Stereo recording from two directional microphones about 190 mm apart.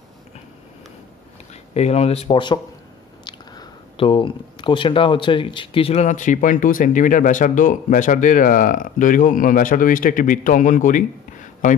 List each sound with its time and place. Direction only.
1.5 s speech: 35° left (ahead or behind)